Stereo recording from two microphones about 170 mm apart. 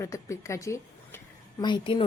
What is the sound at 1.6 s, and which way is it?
Speech, 30° left (ahead or behind).